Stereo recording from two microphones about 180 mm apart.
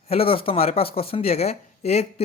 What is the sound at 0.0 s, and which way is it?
Speech, 35° left (ahead or behind).